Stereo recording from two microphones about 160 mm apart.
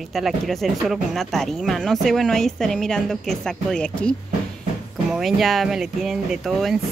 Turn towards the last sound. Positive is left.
turn(degrees=0)  # may be behind; listen again after turning